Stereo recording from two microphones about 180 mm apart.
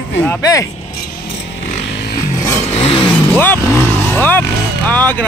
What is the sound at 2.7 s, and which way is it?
Vehicle, 30° left (ahead or behind).